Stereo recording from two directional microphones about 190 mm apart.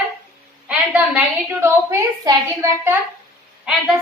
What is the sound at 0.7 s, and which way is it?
A woman's voice, 5° right (ahead or behind).